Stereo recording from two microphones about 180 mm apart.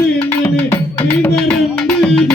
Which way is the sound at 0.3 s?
15° left (ahead or behind).